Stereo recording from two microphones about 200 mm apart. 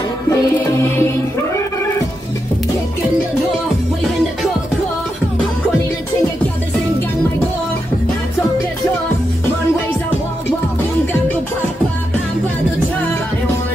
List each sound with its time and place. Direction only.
0.3 s music: 15° left (ahead or behind)